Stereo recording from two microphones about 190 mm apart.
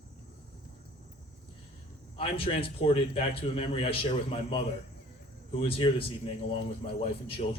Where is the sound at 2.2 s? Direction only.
30° left (ahead or behind).